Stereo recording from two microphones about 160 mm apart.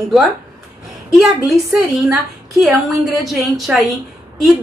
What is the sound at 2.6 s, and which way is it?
A woman's voice, centre (ahead or behind).